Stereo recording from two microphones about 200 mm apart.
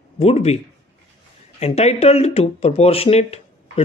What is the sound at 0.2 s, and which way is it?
Speech, 30° left (ahead or behind).